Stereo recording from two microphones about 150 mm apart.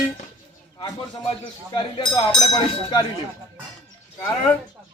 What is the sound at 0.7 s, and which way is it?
Speech, 30° left (ahead or behind).